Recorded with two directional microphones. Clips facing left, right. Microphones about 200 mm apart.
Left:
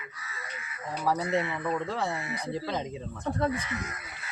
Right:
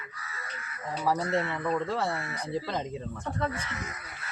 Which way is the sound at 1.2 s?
15° left (ahead or behind).